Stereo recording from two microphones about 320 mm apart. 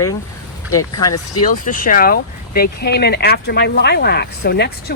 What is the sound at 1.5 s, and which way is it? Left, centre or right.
Speech, left.